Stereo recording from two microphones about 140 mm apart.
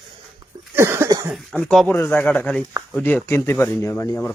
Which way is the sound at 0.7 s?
15° right (ahead or behind).